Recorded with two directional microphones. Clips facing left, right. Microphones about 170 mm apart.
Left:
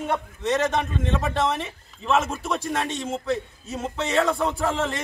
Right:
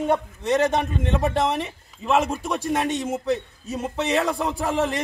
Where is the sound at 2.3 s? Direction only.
15° right (ahead or behind).